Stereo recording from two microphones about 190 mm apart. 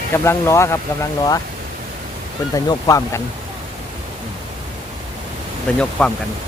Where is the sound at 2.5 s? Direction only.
20° left (ahead or behind).